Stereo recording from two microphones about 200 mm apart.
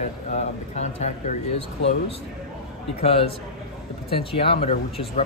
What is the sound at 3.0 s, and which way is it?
Speech, 30° left (ahead or behind).